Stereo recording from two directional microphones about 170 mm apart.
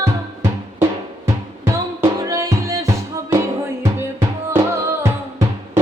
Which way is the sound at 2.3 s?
20° right (ahead or behind).